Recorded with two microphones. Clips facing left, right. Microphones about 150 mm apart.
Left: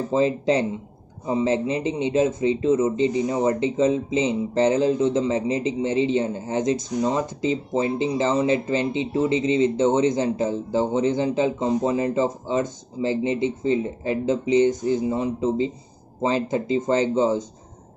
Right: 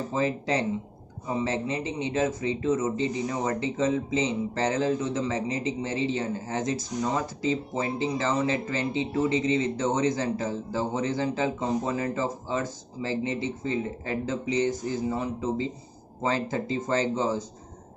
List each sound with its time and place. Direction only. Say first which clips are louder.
0.1 s speech: left 7 dB; 25° left (ahead or behind)